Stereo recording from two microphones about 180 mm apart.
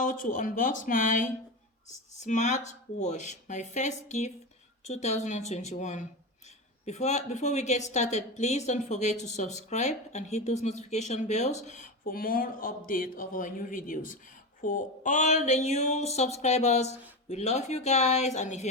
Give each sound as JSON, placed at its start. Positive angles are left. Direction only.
{"t": 0.0, "sound": "speech", "side_deg": 45}